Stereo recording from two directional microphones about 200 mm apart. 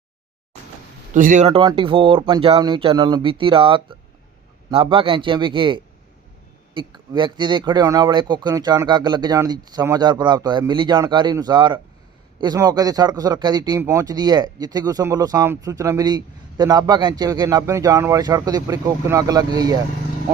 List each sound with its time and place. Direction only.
1.1 s speech: 40° right (ahead or behind)
1.5 s speech: 25° right (ahead or behind)